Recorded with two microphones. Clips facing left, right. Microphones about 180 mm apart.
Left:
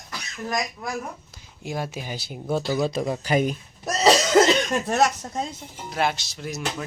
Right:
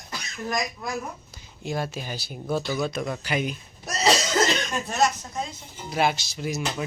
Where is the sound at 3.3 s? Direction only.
45° left (ahead or behind).